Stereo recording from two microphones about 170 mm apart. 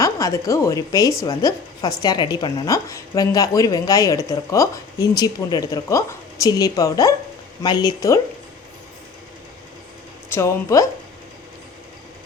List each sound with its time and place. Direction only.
0.0 s a woman's voice: 20° left (ahead or behind)
10.2 s a woman's voice: 15° left (ahead or behind)